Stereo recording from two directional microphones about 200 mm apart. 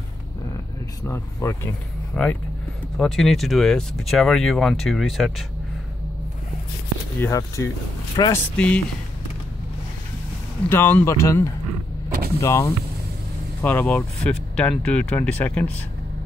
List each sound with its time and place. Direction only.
1.0 s speech: 15° left (ahead or behind)
7.2 s speech: 15° left (ahead or behind)
10.7 s speech: 10° left (ahead or behind)